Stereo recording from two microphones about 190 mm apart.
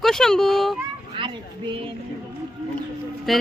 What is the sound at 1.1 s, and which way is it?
Children playing, 25° right (ahead or behind).